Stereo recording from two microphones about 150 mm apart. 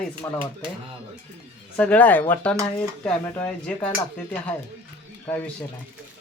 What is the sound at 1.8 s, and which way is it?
Stir, 10° left (ahead or behind).